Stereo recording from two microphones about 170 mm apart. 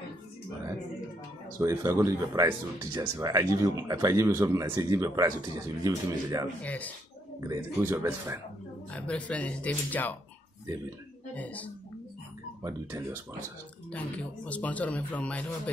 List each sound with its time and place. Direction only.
1.6 s speech: 20° right (ahead or behind)
6.6 s speech: 10° left (ahead or behind)
7.3 s speech: 15° right (ahead or behind)
8.9 s speech: 10° left (ahead or behind)
11.3 s speech: 10° left (ahead or behind)
12.6 s speech: 15° right (ahead or behind)
13.9 s speech: 10° left (ahead or behind)